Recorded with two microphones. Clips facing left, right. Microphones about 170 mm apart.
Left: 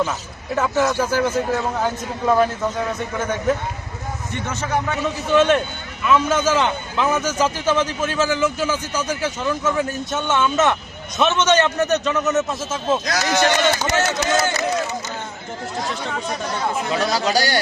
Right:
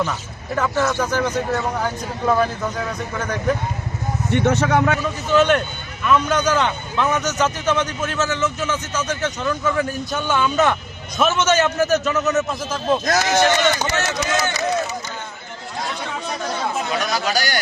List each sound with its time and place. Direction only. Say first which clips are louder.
0.5 s a man's voice: left 1 dB; 10° left (ahead or behind)
4.4 s a man's voice: right 6 dB; 65° right (ahead or behind)
5.0 s a man's voice: even; centre (ahead or behind)
13.1 s speech: right 3 dB; 50° right (ahead or behind)
13.9 s speech: left 2 dB; 30° left (ahead or behind)
16.9 s speech: left 5 dB; 30° left (ahead or behind)